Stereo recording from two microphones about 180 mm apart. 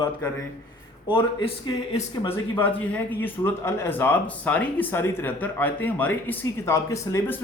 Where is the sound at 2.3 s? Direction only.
10° left (ahead or behind).